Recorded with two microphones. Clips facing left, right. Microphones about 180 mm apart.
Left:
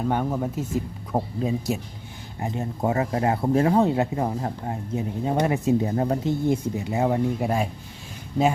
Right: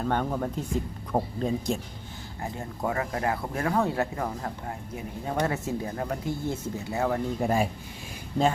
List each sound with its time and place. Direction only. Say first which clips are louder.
0.0 s speech: left 3 dB; 10° left (ahead or behind)
2.4 s speech: left 6 dB; 20° left (ahead or behind)
7.3 s speech: left 1 dB; centre (ahead or behind)